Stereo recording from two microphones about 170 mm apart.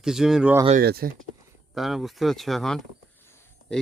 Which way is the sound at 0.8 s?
65° right (ahead or behind).